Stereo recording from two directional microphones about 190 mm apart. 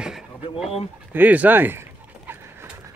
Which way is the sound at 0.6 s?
30° left (ahead or behind).